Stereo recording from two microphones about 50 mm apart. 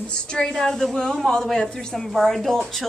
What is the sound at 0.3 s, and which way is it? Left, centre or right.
A woman's voice, centre.